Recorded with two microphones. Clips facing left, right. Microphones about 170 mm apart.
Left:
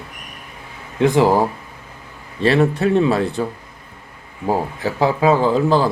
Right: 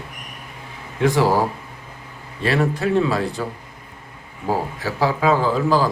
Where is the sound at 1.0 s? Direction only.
20° left (ahead or behind).